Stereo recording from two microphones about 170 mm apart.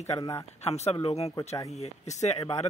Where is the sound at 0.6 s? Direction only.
40° left (ahead or behind).